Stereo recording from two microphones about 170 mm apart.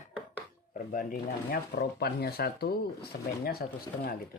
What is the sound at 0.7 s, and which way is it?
Speech, 55° left (ahead or behind).